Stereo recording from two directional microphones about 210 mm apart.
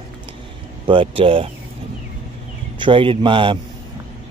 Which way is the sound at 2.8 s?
25° right (ahead or behind).